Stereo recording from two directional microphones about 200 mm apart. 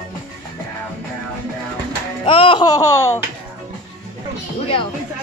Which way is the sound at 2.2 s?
25° left (ahead or behind).